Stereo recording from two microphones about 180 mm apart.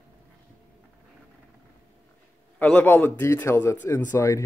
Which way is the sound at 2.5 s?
10° left (ahead or behind).